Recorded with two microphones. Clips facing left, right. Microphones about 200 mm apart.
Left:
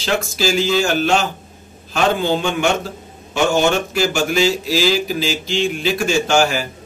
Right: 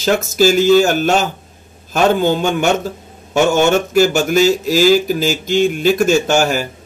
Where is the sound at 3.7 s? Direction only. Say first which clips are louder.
Right 6 dB; 45° right (ahead or behind).